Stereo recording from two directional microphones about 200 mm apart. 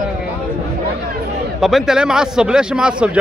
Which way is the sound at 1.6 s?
Centre (ahead or behind).